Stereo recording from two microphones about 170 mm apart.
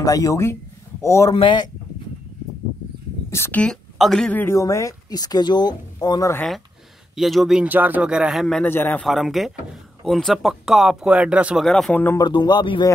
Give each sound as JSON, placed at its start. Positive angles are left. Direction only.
{"t": 0.0, "sound": "a woman's voice", "side_deg": 20}
{"t": 1.3, "sound": "speech", "side_deg": 25}
{"t": 3.3, "sound": "a woman's voice", "side_deg": 15}
{"t": 7.2, "sound": "speech", "side_deg": 0}
{"t": 9.0, "sound": "speech", "side_deg": 0}
{"t": 12.2, "sound": "speech", "side_deg": 25}